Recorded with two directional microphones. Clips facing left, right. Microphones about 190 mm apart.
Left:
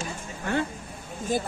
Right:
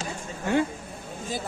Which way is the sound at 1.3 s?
50° left (ahead or behind).